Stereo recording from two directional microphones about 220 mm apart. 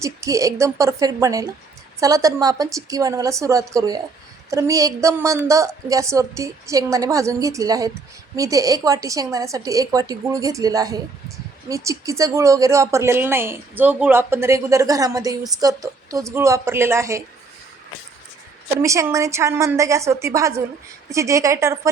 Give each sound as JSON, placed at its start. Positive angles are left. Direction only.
{"t": 0.0, "sound": "a woman's voice", "side_deg": -15}
{"t": 18.8, "sound": "a woman's voice", "side_deg": -15}